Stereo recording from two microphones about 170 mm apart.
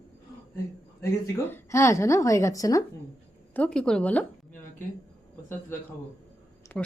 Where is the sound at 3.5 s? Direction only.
5° left (ahead or behind).